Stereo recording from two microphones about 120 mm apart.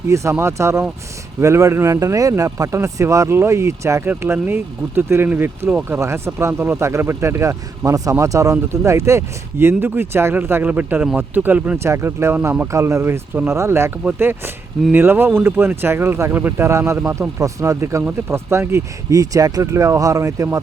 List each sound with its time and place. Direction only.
0.1 s speech: 25° right (ahead or behind)
6.0 s speech: 25° right (ahead or behind)